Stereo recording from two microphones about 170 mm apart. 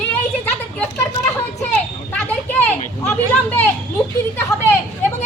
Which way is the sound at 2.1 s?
10° left (ahead or behind).